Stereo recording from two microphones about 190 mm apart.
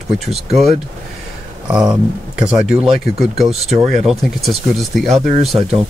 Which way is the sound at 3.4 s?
35° right (ahead or behind).